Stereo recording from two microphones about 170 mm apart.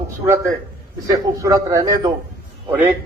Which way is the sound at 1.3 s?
20° right (ahead or behind).